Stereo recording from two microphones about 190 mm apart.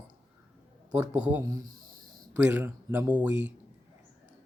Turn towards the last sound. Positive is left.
turn(degrees=-10)  # may be behind; listen again after turning